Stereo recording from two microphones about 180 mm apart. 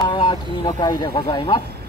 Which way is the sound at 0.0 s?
25° left (ahead or behind).